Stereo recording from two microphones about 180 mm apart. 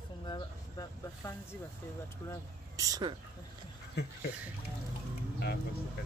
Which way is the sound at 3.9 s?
60° left (ahead or behind).